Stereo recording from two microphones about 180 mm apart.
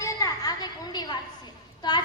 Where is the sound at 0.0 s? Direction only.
20° left (ahead or behind).